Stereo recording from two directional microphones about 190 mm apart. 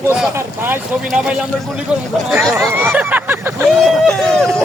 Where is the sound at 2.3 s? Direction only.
Centre (ahead or behind).